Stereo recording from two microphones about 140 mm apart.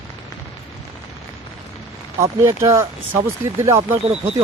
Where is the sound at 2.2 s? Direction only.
20° right (ahead or behind).